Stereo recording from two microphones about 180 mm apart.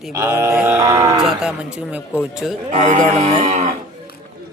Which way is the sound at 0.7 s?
20° right (ahead or behind).